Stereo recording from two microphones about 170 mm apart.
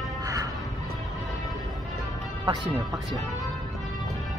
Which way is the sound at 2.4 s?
25° right (ahead or behind).